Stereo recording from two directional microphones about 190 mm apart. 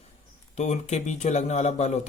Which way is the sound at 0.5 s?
35° left (ahead or behind).